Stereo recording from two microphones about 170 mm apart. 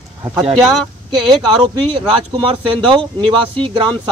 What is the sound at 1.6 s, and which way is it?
Speech, 30° right (ahead or behind).